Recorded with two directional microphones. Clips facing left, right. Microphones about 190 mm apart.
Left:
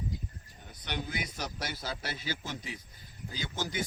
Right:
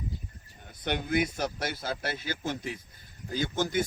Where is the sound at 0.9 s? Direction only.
55° right (ahead or behind).